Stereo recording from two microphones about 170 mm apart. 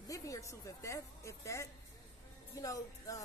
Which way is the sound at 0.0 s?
20° left (ahead or behind).